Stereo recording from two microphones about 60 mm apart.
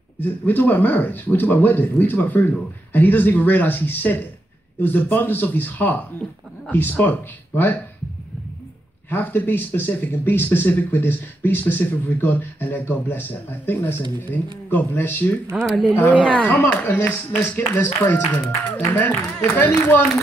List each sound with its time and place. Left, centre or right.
0.2 s speech: left
9.1 s speech: left
15.5 s speech: centre
16.1 s speech: centre
16.4 s speech: left
16.8 s speech: left